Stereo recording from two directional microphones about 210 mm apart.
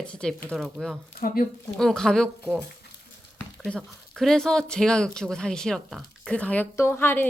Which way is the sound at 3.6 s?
5° left (ahead or behind).